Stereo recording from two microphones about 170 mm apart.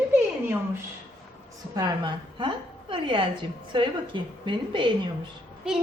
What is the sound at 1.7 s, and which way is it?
A woman's voice, 25° right (ahead or behind).